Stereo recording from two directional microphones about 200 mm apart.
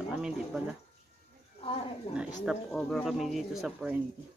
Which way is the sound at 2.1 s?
30° left (ahead or behind).